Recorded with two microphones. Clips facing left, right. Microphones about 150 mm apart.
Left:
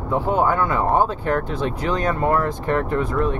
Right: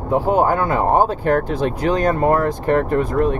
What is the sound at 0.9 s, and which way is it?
Speech, 40° right (ahead or behind).